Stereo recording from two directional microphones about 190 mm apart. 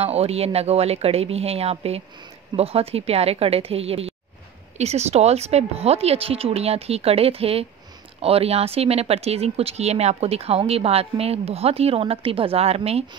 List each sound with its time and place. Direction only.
0.0 s speech: 35° right (ahead or behind)